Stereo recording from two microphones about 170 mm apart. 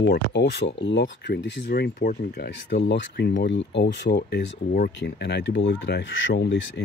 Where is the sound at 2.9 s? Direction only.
90° left.